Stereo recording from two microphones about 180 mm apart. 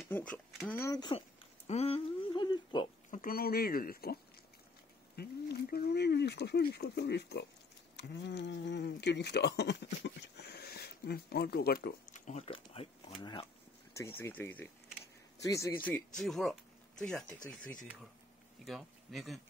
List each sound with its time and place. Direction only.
0.1 s speech: 5° left (ahead or behind); by 2.9 s 25° left (ahead or behind)
3.1 s speech: 50° left (ahead or behind)
12.1 s speech: 40° left (ahead or behind)
13.9 s speech: 15° left (ahead or behind)
18.7 s speech: centre (ahead or behind)